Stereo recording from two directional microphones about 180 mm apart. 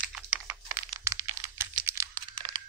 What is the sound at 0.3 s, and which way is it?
Computer keyboard, 10° right (ahead or behind).